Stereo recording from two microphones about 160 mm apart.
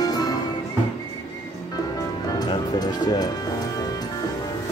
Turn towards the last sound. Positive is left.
turn(degrees=25)  # may be behind; listen again after turning